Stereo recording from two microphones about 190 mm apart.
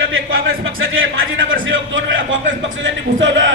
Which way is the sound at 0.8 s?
90° right.